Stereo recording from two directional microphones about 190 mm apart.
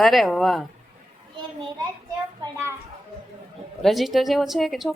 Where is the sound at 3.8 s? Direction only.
Centre (ahead or behind).